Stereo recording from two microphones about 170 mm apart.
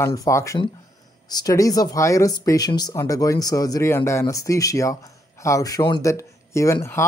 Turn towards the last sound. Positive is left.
turn(degrees=15)  # may be behind; listen again after turning